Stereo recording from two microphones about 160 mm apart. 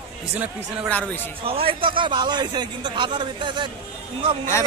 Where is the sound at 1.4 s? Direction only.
35° right (ahead or behind).